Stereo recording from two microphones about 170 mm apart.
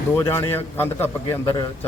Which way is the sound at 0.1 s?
15° left (ahead or behind).